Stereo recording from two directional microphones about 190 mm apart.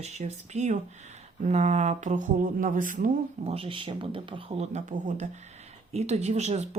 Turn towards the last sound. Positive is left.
turn(degrees=-35)  # may be behind; listen again after turning